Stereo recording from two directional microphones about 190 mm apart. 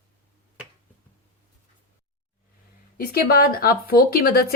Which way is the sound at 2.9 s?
50° left (ahead or behind).